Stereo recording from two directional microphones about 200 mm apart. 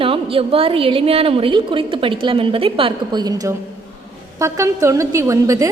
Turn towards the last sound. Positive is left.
turn(degrees=-15)  # may be behind; listen again after turning